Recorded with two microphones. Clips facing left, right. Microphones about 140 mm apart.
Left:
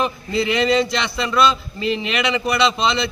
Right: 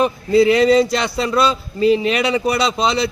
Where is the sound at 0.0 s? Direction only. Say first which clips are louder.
Right 8 dB; 45° right (ahead or behind).